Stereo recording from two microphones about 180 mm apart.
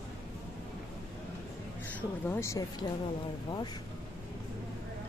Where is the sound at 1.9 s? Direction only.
10° left (ahead or behind).